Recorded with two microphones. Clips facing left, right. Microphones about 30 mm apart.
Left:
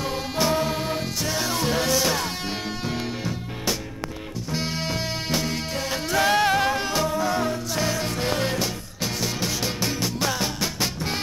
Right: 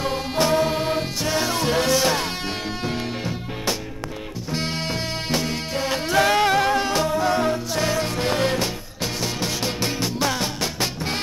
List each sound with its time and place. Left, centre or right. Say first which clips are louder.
0.0 s music: right 3 dB; centre
6.3 s music: right 2 dB; right
6.6 s music: right 3 dB; right
6.9 s music: right 3 dB; centre